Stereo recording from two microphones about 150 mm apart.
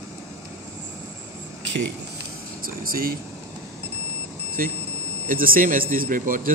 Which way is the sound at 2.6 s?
75° right (ahead or behind).